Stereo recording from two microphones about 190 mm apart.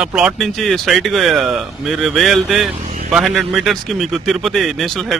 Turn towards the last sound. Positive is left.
turn(degrees=0)  # may be behind; listen again after turning